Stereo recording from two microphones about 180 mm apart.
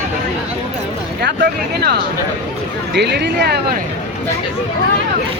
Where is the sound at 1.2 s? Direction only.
65° right (ahead or behind).